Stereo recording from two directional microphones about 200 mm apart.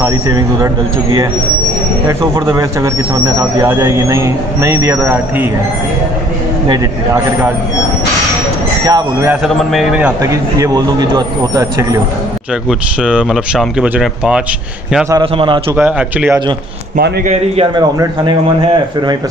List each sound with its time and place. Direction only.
0.0 s a man's voice: 15° right (ahead or behind)
2.0 s a man's voice: 15° right (ahead or behind)
8.8 s a man's voice: 20° right (ahead or behind)
9.3 s a man's voice: centre (ahead or behind); by 12.0 s 20° right (ahead or behind)
12.6 s speech: 5° right (ahead or behind)
15.0 s a man's voice: 20° right (ahead or behind)
15.7 s a man's voice: 5° right (ahead or behind)
16.9 s speech: 40° right (ahead or behind)
17.6 s a man's voice: 20° right (ahead or behind)